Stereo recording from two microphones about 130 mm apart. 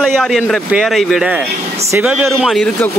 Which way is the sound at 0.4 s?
5° right (ahead or behind).